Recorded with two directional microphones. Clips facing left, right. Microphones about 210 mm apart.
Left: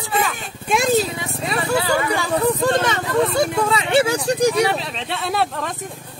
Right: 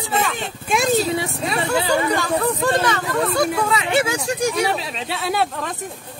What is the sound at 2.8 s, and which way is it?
Speech, 25° left (ahead or behind).